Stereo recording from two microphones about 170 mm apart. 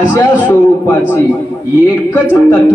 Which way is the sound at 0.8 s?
15° left (ahead or behind).